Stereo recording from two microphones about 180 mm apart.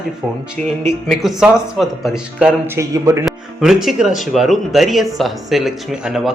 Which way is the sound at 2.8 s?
15° right (ahead or behind).